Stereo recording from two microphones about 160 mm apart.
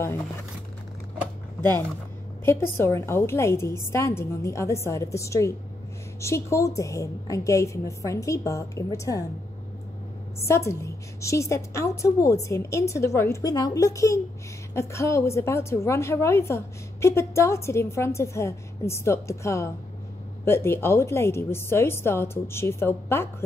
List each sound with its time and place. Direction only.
1.6 s a woman's voice: 15° left (ahead or behind)
10.4 s a woman's voice: 15° left (ahead or behind)